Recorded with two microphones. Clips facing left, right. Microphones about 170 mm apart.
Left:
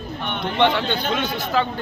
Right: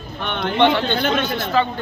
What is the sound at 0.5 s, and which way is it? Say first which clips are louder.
Speech: right 3 dB; 10° left (ahead or behind).